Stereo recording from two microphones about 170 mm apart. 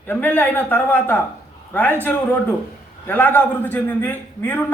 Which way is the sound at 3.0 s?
10° left (ahead or behind).